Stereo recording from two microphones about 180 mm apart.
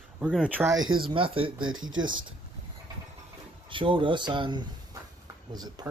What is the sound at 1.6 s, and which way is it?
Speech, 90° right.